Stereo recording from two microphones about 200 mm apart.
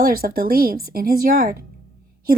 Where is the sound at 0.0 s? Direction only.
50° right (ahead or behind).